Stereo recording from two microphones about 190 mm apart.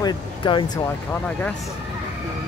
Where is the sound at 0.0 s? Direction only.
25° left (ahead or behind).